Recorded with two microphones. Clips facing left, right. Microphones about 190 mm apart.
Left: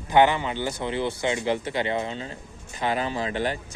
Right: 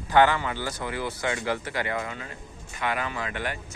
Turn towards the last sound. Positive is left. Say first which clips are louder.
# left 5 dB
turn(degrees=30)  # may be behind; listen again after turning